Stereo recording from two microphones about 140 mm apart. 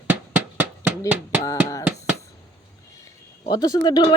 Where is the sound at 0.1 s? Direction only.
10° right (ahead or behind).